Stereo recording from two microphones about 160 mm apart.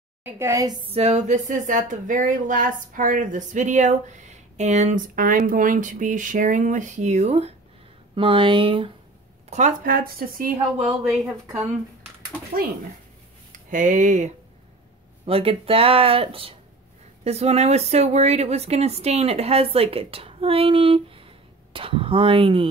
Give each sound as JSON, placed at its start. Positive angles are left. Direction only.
{"t": 0.2, "sound": "a woman's voice", "side_deg": -15}
{"t": 0.8, "sound": "a sound", "side_deg": -40}
{"t": 8.1, "sound": "speech", "side_deg": -35}
{"t": 9.5, "sound": "speech", "side_deg": -50}
{"t": 11.2, "sound": "a woman's voice", "side_deg": -15}
{"t": 13.5, "sound": "speech", "side_deg": -55}
{"t": 15.2, "sound": "speech", "side_deg": -35}